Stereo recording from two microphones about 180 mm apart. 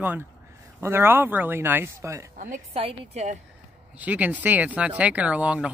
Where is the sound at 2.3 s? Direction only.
45° right (ahead or behind).